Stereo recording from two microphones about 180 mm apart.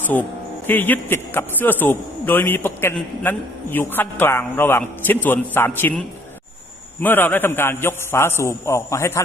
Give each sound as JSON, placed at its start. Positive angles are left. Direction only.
{"t": 0.7, "sound": "a man's voice", "side_deg": 10}